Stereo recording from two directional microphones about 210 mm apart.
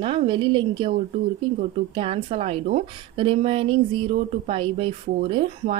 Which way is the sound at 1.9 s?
25° right (ahead or behind).